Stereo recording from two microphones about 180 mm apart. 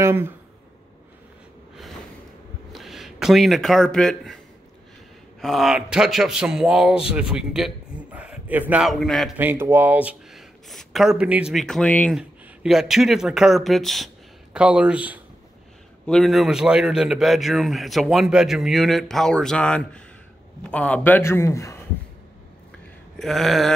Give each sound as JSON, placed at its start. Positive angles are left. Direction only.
{"t": 0.0, "sound": "speech", "side_deg": -15}
{"t": 2.7, "sound": "a man's voice", "side_deg": 0}
{"t": 5.4, "sound": "a man's voice", "side_deg": 0}
{"t": 9.4, "sound": "a man's voice", "side_deg": -10}
{"t": 23.1, "sound": "a sound", "side_deg": 0}